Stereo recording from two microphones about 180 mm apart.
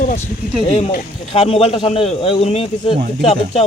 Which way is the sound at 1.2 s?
30° left (ahead or behind).